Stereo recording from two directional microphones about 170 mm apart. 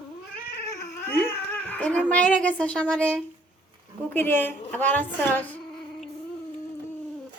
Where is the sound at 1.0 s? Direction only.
10° left (ahead or behind).